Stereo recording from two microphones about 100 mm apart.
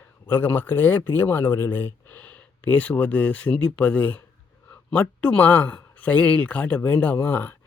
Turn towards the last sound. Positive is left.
turn(degrees=20)  # may be behind; listen again after turning